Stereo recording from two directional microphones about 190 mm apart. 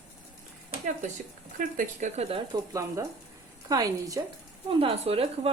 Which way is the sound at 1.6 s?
40° right (ahead or behind).